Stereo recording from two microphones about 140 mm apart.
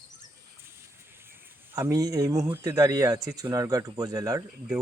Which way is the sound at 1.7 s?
25° right (ahead or behind).